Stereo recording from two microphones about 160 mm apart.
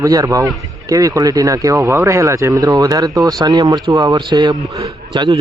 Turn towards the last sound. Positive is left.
turn(degrees=-30)  # may be behind; listen again after turning